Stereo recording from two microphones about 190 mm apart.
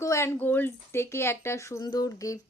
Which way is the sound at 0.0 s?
15° left (ahead or behind).